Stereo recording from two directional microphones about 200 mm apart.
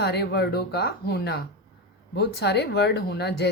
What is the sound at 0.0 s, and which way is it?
Speech, 55° left (ahead or behind).